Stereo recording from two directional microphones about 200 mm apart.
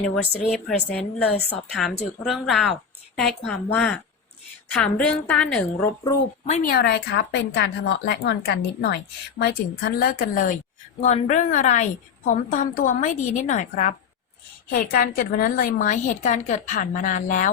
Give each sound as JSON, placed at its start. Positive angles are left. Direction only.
{"t": 0.0, "sound": "a woman's voice", "side_deg": 5}
{"t": 6.4, "sound": "a woman's voice", "side_deg": 40}